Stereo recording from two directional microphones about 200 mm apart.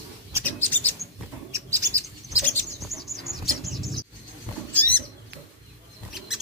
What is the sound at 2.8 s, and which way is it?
Bird, centre (ahead or behind).